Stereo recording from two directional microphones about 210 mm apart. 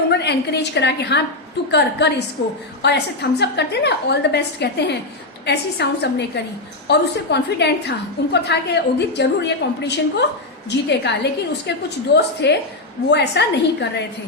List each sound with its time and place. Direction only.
0.1 s a woman's voice: 55° left (ahead or behind)